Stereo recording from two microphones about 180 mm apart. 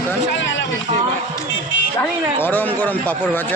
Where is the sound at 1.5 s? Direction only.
90° left.